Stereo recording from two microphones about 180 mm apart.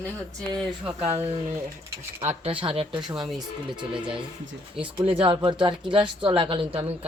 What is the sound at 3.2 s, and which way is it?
Speech, centre (ahead or behind).